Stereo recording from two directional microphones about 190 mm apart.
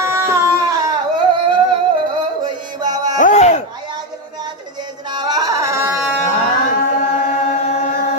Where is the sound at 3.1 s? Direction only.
40° left (ahead or behind).